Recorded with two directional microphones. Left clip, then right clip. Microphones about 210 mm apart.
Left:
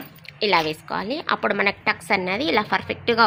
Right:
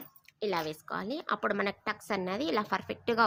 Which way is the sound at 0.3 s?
40° right (ahead or behind).